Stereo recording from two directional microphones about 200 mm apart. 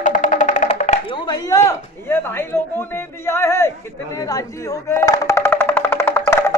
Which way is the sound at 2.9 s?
15° left (ahead or behind).